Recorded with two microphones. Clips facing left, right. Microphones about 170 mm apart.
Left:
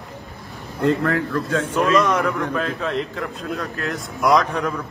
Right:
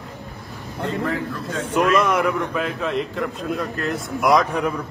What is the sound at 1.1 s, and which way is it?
Speech, 85° left.